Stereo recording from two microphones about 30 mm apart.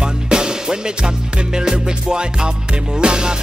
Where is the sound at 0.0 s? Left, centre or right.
Right.